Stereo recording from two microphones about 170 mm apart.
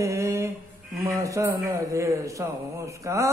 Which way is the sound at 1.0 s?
20° right (ahead or behind).